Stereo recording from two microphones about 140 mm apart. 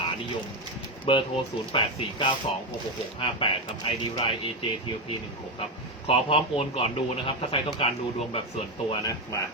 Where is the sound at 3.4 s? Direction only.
40° left (ahead or behind).